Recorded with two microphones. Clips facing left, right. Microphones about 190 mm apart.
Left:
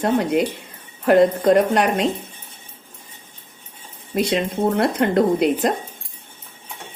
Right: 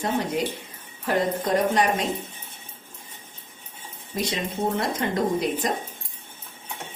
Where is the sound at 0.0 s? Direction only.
65° left (ahead or behind).